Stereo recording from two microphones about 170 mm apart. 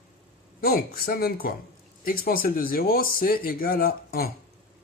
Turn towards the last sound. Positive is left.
turn(degrees=60)  # may be behind; listen again after turning